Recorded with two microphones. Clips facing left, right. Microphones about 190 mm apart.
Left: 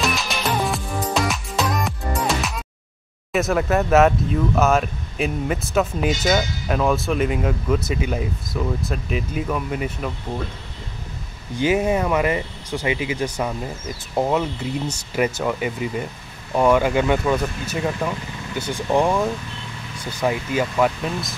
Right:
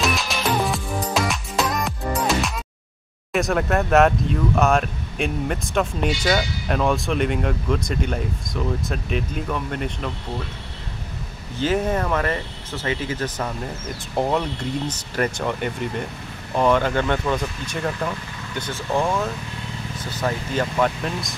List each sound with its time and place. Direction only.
0.0 s music: centre (ahead or behind)
3.3 s speech: centre (ahead or behind)
6.0 s speech: 45° left (ahead or behind)
6.7 s speech: centre (ahead or behind)
11.5 s speech: 10° left (ahead or behind)